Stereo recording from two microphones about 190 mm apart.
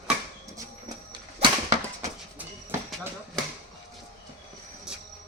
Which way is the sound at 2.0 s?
10° right (ahead or behind).